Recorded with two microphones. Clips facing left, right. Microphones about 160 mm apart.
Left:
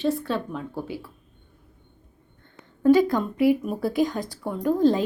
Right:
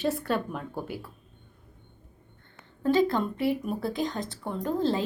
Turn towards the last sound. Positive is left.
turn(degrees=15)  # may be behind; listen again after turning